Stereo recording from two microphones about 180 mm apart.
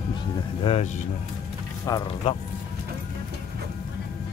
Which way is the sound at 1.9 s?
20° left (ahead or behind).